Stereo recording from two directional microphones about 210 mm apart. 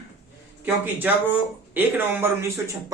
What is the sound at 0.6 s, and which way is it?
Speech, 10° right (ahead or behind).